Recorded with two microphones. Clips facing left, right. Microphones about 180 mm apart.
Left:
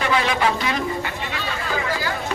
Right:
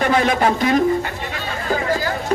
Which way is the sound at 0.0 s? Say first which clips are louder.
Right 4 dB; 45° right (ahead or behind).